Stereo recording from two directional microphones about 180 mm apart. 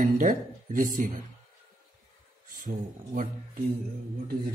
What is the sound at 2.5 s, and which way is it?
Speech, 50° right (ahead or behind).